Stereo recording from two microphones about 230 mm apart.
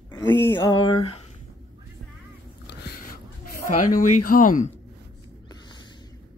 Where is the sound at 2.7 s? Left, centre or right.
Left.